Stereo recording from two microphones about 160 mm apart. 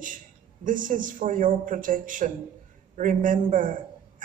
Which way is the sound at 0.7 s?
55° right (ahead or behind).